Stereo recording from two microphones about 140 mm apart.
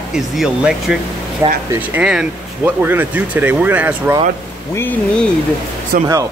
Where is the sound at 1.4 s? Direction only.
20° right (ahead or behind).